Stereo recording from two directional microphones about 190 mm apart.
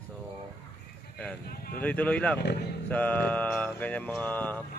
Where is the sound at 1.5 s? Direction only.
50° left (ahead or behind).